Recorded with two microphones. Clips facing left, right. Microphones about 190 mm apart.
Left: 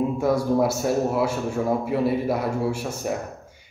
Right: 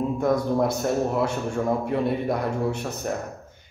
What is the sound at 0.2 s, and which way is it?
A man's voice, 5° left (ahead or behind).